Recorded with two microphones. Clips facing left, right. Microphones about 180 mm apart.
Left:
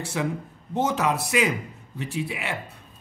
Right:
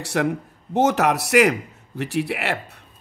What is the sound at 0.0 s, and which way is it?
A man's voice, 70° right (ahead or behind).